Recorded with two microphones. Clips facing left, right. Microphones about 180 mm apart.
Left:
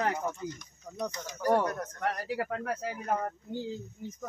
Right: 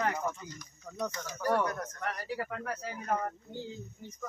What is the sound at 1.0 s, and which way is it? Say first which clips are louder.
Speech: left 1 dB; 20° left (ahead or behind).